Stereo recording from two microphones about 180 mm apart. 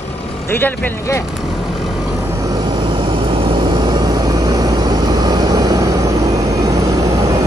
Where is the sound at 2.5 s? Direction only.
25° right (ahead or behind).